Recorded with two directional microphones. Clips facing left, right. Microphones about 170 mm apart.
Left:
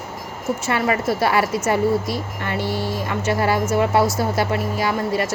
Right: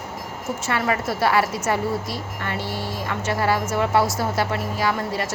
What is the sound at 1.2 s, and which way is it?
Speech, 15° left (ahead or behind).